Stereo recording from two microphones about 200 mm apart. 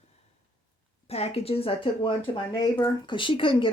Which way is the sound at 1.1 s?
30° left (ahead or behind).